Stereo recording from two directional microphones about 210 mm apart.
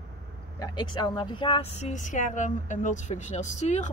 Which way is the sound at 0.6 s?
20° left (ahead or behind).